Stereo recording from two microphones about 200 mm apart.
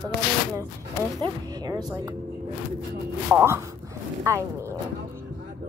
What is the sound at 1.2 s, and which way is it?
Speech, 20° right (ahead or behind).